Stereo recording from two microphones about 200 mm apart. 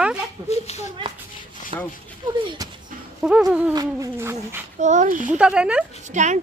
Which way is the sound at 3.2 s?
5° right (ahead or behind).